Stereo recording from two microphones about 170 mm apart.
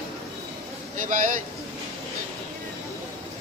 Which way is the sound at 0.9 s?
45° right (ahead or behind).